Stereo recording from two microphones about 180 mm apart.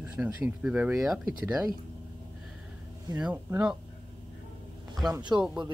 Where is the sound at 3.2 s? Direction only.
10° right (ahead or behind).